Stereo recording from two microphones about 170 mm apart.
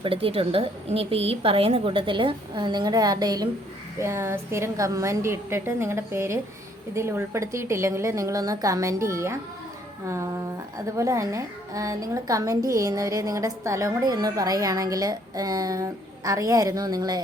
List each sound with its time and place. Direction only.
0.0 s a woman's voice: 35° right (ahead or behind); by 9.4 s 15° right (ahead or behind)
10.9 s a woman's voice: 20° right (ahead or behind)